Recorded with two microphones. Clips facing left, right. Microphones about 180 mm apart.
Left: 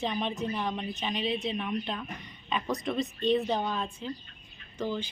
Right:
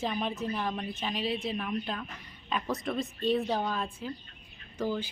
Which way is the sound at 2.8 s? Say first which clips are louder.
Left 2 dB; centre (ahead or behind).